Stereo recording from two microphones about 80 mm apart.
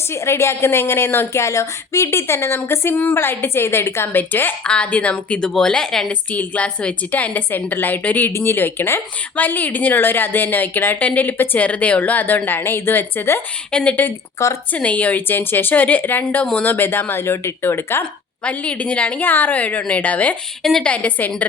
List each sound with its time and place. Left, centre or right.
0.1 s a woman's voice: left; by 6.1 s centre
6.1 s speech: centre
13.7 s a woman's voice: centre; by 18.0 s left
18.4 s a woman's voice: centre
20.6 s a woman's voice: centre
20.9 s speech: centre